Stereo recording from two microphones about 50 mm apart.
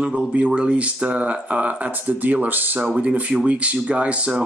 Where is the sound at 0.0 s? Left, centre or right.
Right.